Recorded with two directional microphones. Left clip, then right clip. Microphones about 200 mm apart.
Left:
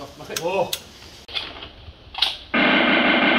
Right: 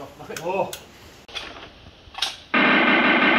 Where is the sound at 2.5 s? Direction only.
30° left (ahead or behind).